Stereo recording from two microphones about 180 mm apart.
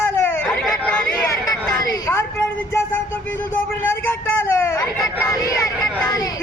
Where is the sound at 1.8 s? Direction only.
20° left (ahead or behind).